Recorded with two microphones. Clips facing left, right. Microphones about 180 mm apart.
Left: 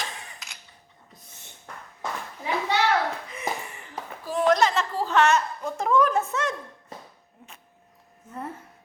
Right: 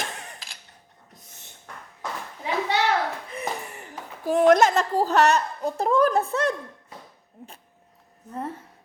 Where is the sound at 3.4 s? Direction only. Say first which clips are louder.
Right 1 dB; 40° right (ahead or behind).